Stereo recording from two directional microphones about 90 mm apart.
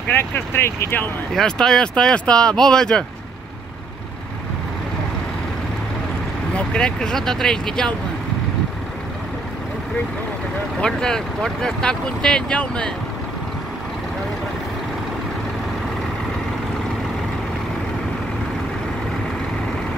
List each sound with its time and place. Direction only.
0.1 s speech: 25° left (ahead or behind)
1.3 s speech: 10° left (ahead or behind)
6.5 s speech: 10° left (ahead or behind)
10.8 s speech: 10° left (ahead or behind)